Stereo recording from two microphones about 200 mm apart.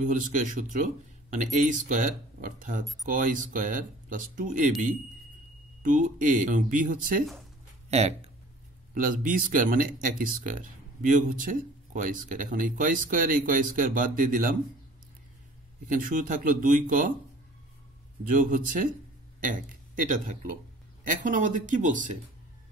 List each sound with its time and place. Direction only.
0.0 s speech: 40° right (ahead or behind)
5.8 s speech: 40° right (ahead or behind)
7.9 s speech: 30° right (ahead or behind)
8.9 s speech: 45° right (ahead or behind)
15.9 s speech: 40° right (ahead or behind)
18.3 s speech: 40° right (ahead or behind)